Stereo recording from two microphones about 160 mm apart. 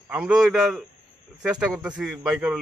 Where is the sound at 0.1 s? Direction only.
5° right (ahead or behind).